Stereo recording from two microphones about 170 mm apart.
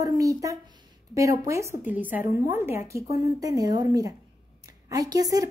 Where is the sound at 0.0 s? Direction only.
20° right (ahead or behind).